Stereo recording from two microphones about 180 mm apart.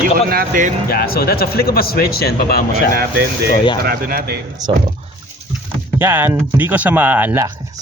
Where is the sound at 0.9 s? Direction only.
60° left (ahead or behind).